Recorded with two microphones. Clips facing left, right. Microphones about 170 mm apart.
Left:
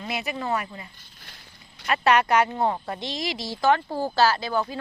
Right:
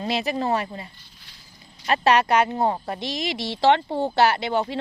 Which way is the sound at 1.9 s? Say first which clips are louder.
Right 1 dB; 25° right (ahead or behind).